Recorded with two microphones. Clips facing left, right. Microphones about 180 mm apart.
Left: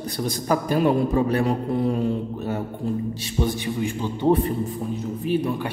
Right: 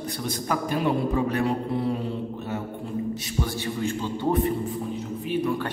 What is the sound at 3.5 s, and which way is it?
Speech, 15° left (ahead or behind).